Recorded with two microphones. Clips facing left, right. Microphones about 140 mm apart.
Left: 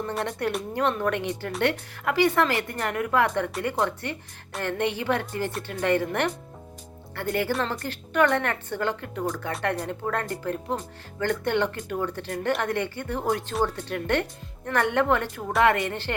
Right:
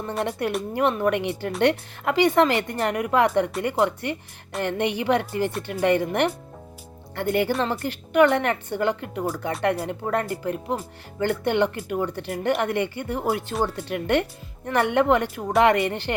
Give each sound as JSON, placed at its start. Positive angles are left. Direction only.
{"t": 0.3, "sound": "a woman's voice", "side_deg": -15}